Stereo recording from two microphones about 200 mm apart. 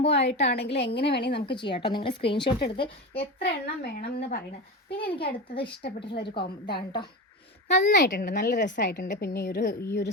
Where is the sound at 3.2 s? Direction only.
50° left (ahead or behind).